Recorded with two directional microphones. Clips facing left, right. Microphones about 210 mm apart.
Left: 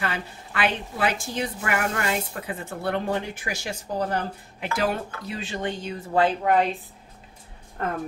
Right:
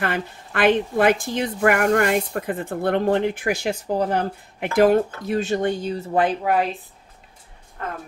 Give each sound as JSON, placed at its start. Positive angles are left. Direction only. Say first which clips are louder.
{"t": 0.0, "sound": "a woman's voice", "louder": "right 5 dB", "side_deg": -55}
{"t": 5.9, "sound": "speech", "louder": "left 2 dB", "side_deg": -20}
{"t": 6.4, "sound": "speech", "louder": "even", "side_deg": -5}